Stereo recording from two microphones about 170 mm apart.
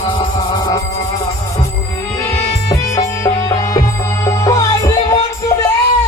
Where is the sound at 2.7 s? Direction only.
20° left (ahead or behind).